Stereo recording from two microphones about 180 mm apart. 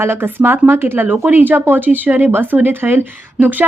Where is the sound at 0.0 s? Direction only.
15° right (ahead or behind).